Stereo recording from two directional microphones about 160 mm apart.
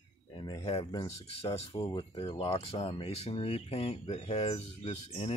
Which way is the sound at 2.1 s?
35° left (ahead or behind).